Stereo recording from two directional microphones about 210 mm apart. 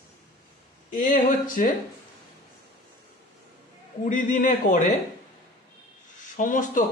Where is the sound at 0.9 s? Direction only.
40° left (ahead or behind).